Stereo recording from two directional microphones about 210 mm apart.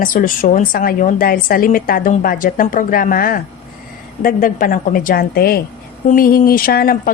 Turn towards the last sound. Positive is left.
turn(degrees=45)  # may be behind; listen again after turning